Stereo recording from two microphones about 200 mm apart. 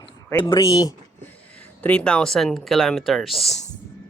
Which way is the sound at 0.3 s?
15° left (ahead or behind).